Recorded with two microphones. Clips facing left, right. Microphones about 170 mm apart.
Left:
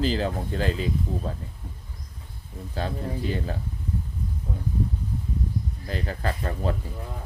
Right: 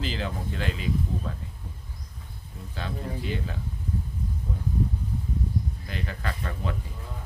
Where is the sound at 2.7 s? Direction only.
40° left (ahead or behind).